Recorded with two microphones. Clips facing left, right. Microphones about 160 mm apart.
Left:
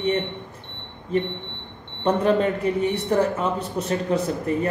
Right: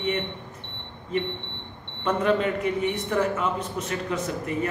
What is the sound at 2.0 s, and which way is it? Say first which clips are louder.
A man's voice: left 3 dB; 35° left (ahead or behind).